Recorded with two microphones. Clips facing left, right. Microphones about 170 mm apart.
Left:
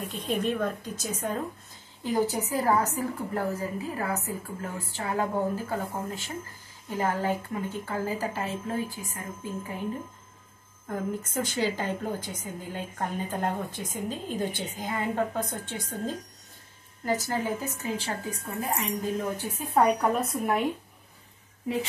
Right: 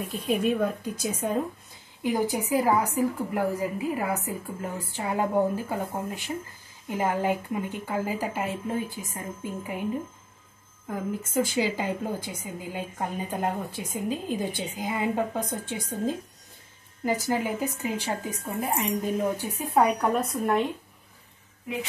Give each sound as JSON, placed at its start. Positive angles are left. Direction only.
{"t": 0.0, "sound": "a woman's voice", "side_deg": -5}
{"t": 10.9, "sound": "a woman's voice", "side_deg": -5}
{"t": 19.3, "sound": "speech", "side_deg": -10}